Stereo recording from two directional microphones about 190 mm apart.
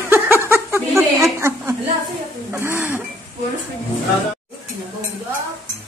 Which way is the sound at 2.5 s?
10° right (ahead or behind).